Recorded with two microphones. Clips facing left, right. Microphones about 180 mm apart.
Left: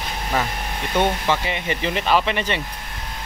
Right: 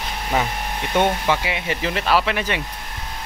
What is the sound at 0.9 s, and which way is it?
Speech, 10° right (ahead or behind).